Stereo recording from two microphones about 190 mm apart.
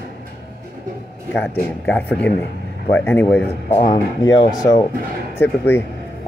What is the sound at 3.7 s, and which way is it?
Speech, 25° left (ahead or behind).